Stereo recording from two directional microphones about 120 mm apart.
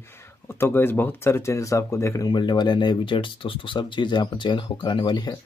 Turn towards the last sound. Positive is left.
turn(degrees=40)  # may be behind; listen again after turning